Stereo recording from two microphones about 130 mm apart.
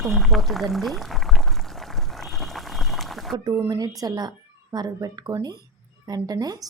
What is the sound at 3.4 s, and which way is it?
A woman's voice, 25° right (ahead or behind).